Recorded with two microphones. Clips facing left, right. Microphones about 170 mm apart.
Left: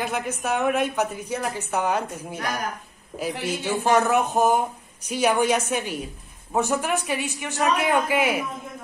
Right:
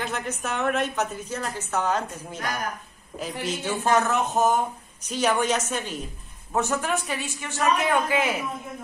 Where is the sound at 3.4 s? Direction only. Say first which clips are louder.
Left 1 dB; 10° left (ahead or behind).